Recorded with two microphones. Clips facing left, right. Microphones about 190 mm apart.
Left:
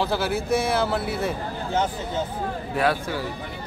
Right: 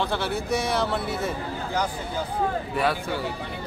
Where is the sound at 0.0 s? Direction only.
5° left (ahead or behind).